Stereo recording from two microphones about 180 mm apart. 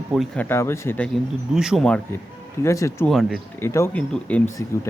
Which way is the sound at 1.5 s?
5° right (ahead or behind).